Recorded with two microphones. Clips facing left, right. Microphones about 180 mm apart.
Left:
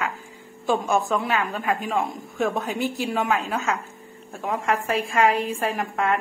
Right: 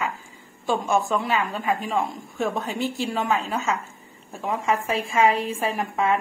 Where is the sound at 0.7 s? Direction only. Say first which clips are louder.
Left 1 dB; centre (ahead or behind).